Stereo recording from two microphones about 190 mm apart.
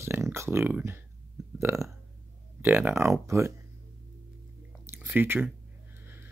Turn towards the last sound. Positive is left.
turn(degrees=-10)  # may be behind; listen again after turning